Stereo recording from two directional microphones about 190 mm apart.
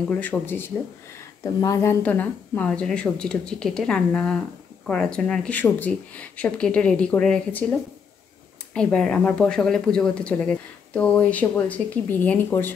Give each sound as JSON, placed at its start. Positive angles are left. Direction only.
{"t": 0.2, "sound": "a woman's voice", "side_deg": 10}